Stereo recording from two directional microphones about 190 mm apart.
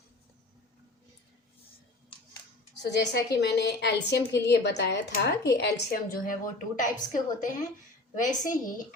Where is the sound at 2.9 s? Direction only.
65° left (ahead or behind).